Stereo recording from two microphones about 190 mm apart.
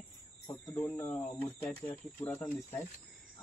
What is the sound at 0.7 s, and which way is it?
Speech, 10° left (ahead or behind).